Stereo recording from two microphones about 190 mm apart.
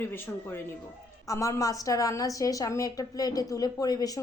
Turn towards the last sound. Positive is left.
turn(degrees=20)  # may be behind; listen again after turning